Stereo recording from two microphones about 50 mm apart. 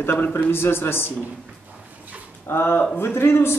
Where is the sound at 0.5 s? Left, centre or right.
Left.